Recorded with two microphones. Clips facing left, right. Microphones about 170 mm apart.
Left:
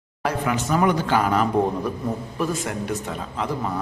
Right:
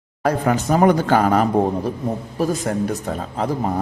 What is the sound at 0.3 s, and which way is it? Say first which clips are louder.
A man's voice: right 5 dB; 40° right (ahead or behind).